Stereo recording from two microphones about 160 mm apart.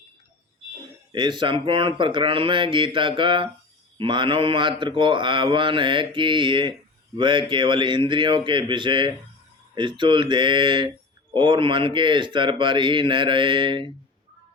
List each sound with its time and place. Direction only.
1.1 s speech: 30° right (ahead or behind)